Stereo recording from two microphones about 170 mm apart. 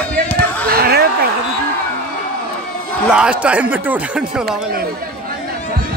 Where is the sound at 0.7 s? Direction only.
60° right (ahead or behind).